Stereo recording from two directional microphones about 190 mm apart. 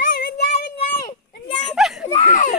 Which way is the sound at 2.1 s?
40° left (ahead or behind).